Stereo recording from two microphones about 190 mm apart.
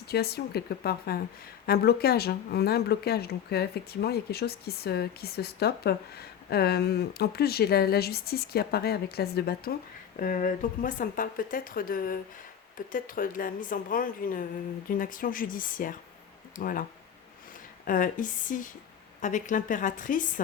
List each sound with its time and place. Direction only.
0.1 s speech: 55° left (ahead or behind)
17.8 s speech: 45° left (ahead or behind)